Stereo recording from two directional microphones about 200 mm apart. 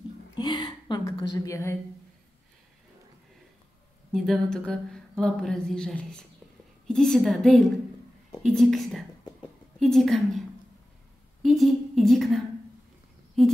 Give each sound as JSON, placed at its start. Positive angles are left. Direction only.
{"t": 0.4, "sound": "gasp", "side_deg": 20}
{"t": 4.1, "sound": "speech", "side_deg": 0}
{"t": 11.4, "sound": "a woman's voice", "side_deg": 0}